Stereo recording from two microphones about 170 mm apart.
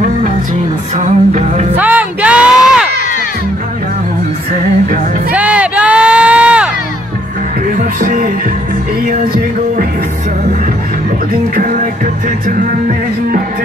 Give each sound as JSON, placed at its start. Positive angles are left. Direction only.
{"t": 0.9, "sound": "music", "side_deg": -45}
{"t": 1.8, "sound": "a sound", "side_deg": -10}
{"t": 5.3, "sound": "crowd", "side_deg": -10}
{"t": 7.7, "sound": "music", "side_deg": -55}
{"t": 11.5, "sound": "music", "side_deg": -55}